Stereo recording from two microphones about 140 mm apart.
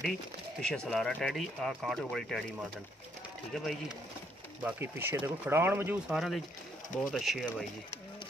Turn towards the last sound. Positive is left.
turn(degrees=0)  # may be behind; listen again after turning